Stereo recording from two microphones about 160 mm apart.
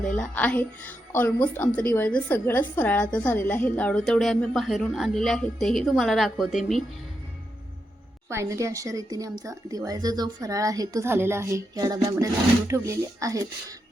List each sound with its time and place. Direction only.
0.0 s a woman's voice: 5° left (ahead or behind)
8.3 s speech: 20° right (ahead or behind)